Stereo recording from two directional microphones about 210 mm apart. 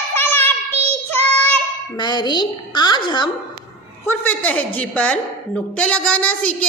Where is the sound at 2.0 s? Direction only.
20° left (ahead or behind).